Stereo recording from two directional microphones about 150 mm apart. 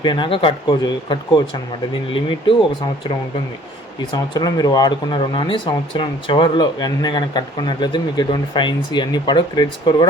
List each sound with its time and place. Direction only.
0.0 s speech: 30° left (ahead or behind)
4.1 s speech: 25° left (ahead or behind)